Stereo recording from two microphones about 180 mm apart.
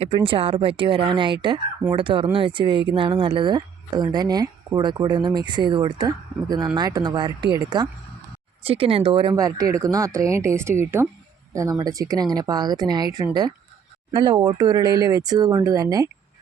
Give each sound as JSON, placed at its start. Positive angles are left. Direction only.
{"t": 0.0, "sound": "speech", "side_deg": -30}